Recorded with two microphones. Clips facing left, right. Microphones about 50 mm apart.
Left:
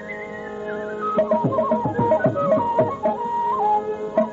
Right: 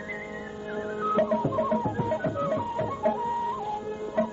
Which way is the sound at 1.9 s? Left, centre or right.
Left.